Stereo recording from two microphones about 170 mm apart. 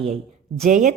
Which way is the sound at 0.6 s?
50° right (ahead or behind).